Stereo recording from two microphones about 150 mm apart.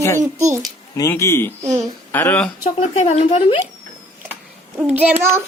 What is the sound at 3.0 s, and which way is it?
Speech, 45° left (ahead or behind).